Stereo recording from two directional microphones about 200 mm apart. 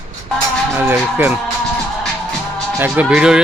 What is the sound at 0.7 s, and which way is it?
Speech, 10° right (ahead or behind).